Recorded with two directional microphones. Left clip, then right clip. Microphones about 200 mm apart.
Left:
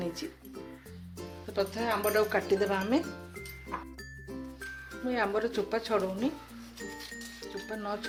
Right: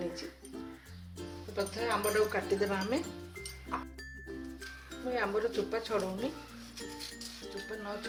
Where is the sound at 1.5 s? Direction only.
45° left (ahead or behind).